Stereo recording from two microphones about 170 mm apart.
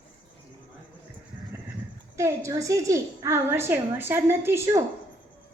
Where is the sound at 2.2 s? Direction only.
15° right (ahead or behind).